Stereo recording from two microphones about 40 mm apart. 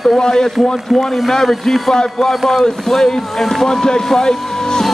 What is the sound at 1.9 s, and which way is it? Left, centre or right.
Speech, centre.